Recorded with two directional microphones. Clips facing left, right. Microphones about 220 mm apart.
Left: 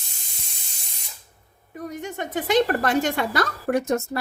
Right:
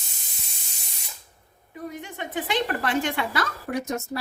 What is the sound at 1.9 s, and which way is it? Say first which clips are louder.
A woman's voice: left 4 dB; 45° left (ahead or behind).